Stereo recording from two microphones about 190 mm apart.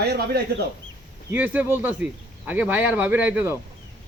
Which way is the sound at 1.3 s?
10° right (ahead or behind).